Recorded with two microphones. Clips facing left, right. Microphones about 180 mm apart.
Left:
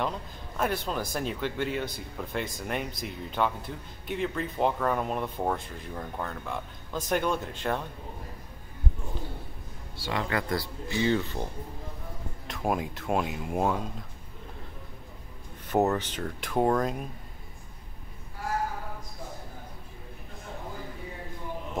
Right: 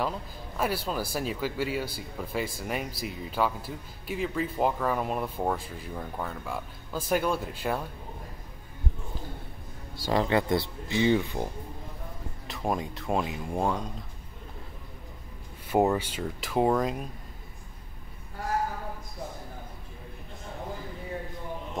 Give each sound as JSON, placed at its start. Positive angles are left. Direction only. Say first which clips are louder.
{"t": 0.6, "sound": "speech", "louder": "even", "side_deg": -5}
{"t": 9.9, "sound": "speech", "louder": "right 5 dB", "side_deg": -40}
{"t": 10.2, "sound": "speech", "louder": "right 4 dB", "side_deg": -25}
{"t": 12.4, "sound": "speech", "louder": "left 1 dB", "side_deg": 0}
{"t": 15.7, "sound": "speech", "louder": "right 1 dB", "side_deg": -10}